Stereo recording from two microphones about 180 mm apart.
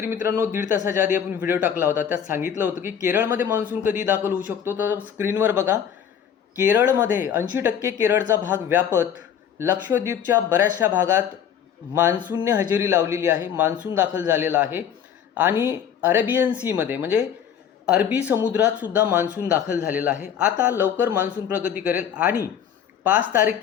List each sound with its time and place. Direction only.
0.0 s speech: 15° right (ahead or behind)
12.3 s speech: 10° right (ahead or behind)